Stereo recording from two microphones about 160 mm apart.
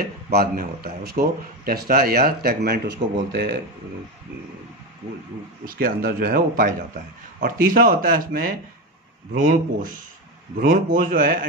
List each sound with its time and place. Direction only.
0.0 s speech: 75° right (ahead or behind)
5.7 s speech: 65° right (ahead or behind)